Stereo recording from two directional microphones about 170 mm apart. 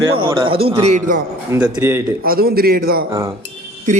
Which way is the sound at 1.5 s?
15° right (ahead or behind).